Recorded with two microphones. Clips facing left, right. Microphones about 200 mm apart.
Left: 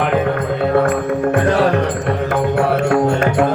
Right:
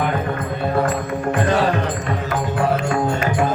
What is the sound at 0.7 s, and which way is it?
Music, 60° left (ahead or behind).